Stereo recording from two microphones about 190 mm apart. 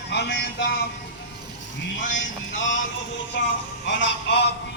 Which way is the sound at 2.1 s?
75° left (ahead or behind).